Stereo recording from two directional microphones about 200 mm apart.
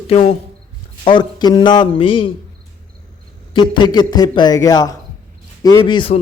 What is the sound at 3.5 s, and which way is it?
A man's voice, 25° left (ahead or behind).